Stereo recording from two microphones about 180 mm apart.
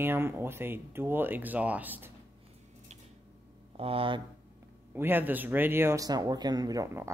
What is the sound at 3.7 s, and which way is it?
Speech, 30° right (ahead or behind).